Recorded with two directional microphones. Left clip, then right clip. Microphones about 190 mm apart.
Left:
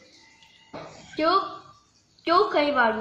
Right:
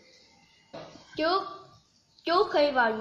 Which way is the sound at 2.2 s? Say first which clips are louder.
Left 3 dB; 40° right (ahead or behind).